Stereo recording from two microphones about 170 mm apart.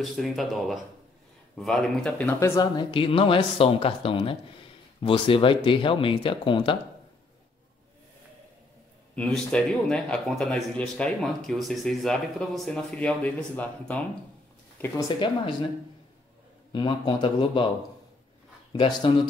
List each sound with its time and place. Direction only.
0.0 s speech: centre (ahead or behind); by 6.8 s 30° left (ahead or behind)
9.1 s speech: 5° left (ahead or behind)
15.0 s speech: 30° left (ahead or behind)
16.7 s speech: 25° left (ahead or behind)
18.7 s a man's voice: 25° left (ahead or behind)